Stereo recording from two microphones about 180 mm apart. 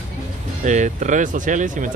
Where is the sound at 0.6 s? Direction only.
45° right (ahead or behind).